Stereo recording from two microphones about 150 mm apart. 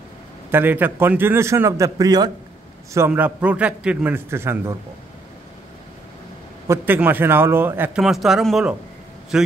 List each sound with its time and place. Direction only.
0.5 s a man's voice: 15° right (ahead or behind)
3.1 s a man's voice: 10° right (ahead or behind)
6.7 s a man's voice: 15° right (ahead or behind)
8.0 s speech: centre (ahead or behind)